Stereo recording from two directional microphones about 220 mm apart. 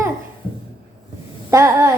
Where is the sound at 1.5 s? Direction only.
15° right (ahead or behind).